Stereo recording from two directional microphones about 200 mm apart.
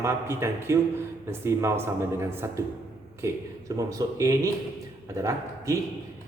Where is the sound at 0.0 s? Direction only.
15° right (ahead or behind).